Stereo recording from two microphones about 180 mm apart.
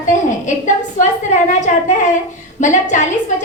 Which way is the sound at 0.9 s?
40° left (ahead or behind).